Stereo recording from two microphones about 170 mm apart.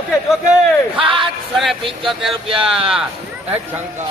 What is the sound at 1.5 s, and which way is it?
Speech, centre (ahead or behind).